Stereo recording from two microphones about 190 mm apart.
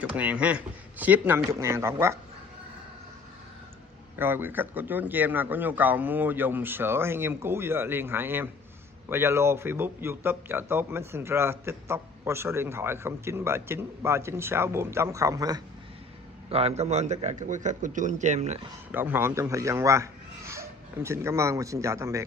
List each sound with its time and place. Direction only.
0.1 s a man's voice: 5° right (ahead or behind)
4.2 s a man's voice: 10° right (ahead or behind)
16.4 s a man's voice: 30° right (ahead or behind)
18.9 s speech: 10° right (ahead or behind)